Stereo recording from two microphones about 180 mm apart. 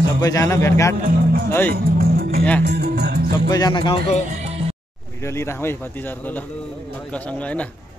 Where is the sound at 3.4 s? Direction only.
25° left (ahead or behind).